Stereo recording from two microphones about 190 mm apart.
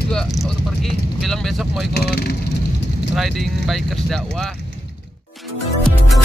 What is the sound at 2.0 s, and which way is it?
Speech, 55° left (ahead or behind).